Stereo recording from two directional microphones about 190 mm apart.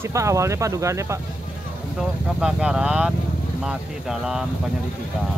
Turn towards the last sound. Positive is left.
turn(degrees=-5)  # may be behind; listen again after turning